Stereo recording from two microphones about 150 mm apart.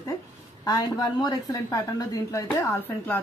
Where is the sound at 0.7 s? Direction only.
25° left (ahead or behind).